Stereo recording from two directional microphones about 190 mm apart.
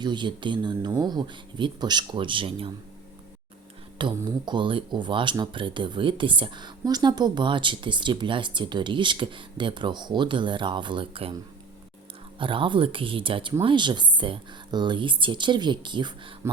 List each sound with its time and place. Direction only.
0.0 s speech: 25° right (ahead or behind)
3.9 s speech: 25° right (ahead or behind)
12.4 s speech: 25° right (ahead or behind)